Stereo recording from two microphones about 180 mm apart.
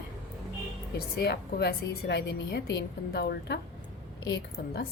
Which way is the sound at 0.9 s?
60° left (ahead or behind).